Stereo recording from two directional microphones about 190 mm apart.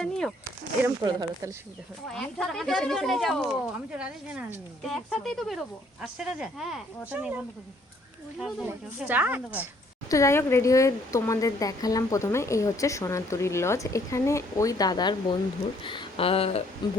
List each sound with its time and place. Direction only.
0.0 s a sound: 5° left (ahead or behind)
1.0 s speech: 15° right (ahead or behind)
2.0 s speech: 5° left (ahead or behind)
10.1 s speech: 15° left (ahead or behind); by 16.6 s 30° left (ahead or behind)